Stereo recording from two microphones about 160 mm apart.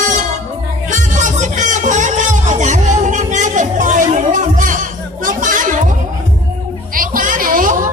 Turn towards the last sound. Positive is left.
turn(degrees=-60)  # may be behind; listen again after turning